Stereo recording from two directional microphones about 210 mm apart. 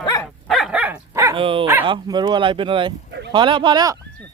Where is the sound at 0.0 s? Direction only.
20° left (ahead or behind).